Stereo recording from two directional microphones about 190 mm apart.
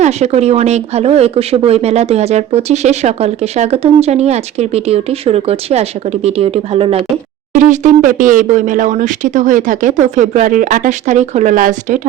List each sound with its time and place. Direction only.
0.0 s speech: 35° right (ahead or behind)
7.5 s speech: 40° right (ahead or behind)